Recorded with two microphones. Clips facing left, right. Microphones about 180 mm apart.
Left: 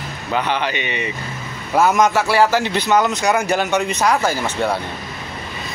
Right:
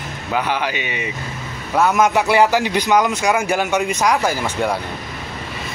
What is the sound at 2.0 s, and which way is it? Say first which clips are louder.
Speech: right 1 dB; 15° right (ahead or behind).